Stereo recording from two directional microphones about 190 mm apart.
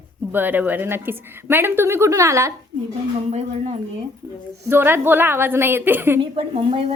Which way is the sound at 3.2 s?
35° right (ahead or behind).